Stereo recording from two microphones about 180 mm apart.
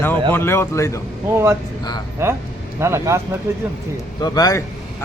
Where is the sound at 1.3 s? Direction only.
15° right (ahead or behind).